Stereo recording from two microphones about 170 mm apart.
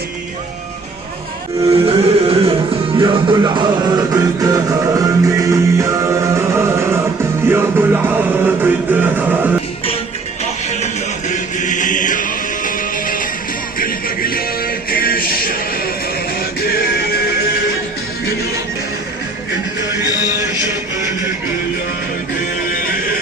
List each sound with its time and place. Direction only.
1.9 s music: 35° right (ahead or behind); by 9.6 s 10° right (ahead or behind)
10.7 s music: 45° left (ahead or behind)